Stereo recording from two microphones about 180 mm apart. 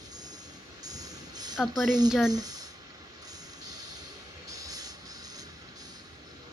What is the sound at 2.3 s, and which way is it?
Speech, 20° right (ahead or behind).